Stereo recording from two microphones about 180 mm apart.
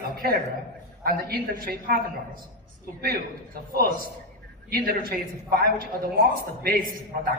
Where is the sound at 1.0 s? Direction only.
55° right (ahead or behind).